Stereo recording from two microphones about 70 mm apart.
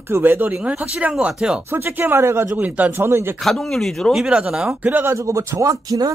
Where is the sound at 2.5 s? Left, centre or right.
Right.